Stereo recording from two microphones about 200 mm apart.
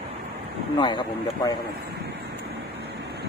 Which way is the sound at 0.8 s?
25° left (ahead or behind).